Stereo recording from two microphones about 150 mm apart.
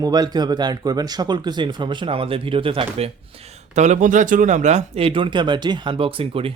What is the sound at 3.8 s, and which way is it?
Speech, 55° right (ahead or behind).